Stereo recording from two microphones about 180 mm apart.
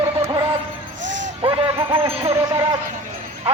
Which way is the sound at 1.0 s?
90° right.